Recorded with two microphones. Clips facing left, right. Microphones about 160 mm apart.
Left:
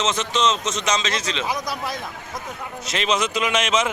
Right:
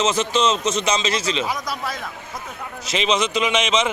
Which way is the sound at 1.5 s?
20° left (ahead or behind).